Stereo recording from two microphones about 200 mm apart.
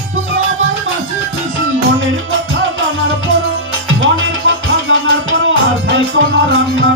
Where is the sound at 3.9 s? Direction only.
75° right (ahead or behind).